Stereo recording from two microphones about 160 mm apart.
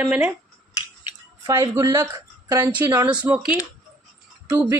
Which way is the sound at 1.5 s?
20° right (ahead or behind).